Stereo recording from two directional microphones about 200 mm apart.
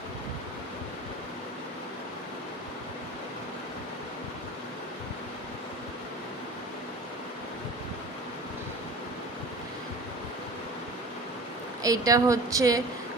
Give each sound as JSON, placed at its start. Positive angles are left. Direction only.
{"t": 11.8, "sound": "speech", "side_deg": -15}